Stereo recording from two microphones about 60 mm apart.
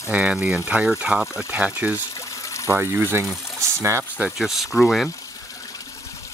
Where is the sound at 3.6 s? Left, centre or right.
Right.